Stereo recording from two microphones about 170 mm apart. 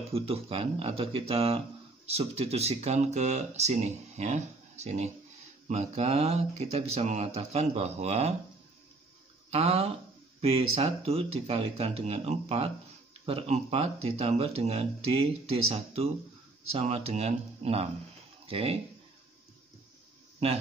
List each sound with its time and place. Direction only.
0.1 s speech: 35° right (ahead or behind)
9.5 s speech: 35° right (ahead or behind)